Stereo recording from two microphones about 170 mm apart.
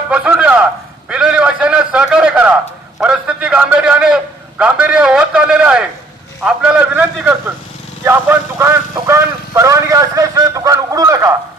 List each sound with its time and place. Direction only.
0.1 s a man's voice: 5° right (ahead or behind)